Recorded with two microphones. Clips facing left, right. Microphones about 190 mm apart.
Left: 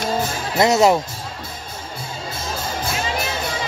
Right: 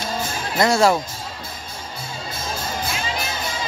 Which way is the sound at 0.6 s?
20° left (ahead or behind).